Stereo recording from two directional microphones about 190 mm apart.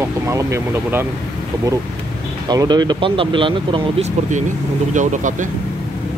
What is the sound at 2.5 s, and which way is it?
Speech, 20° right (ahead or behind).